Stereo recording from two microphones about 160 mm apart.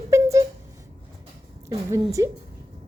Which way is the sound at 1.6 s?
20° right (ahead or behind).